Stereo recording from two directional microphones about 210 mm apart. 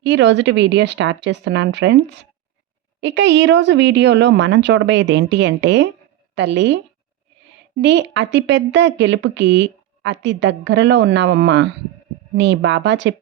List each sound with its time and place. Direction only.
0.0 s speech: 60° right (ahead or behind)
3.0 s speech: 60° right (ahead or behind)
7.8 s speech: 55° right (ahead or behind)